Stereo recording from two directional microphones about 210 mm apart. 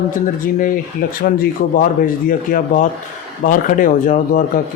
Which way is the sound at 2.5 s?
40° left (ahead or behind).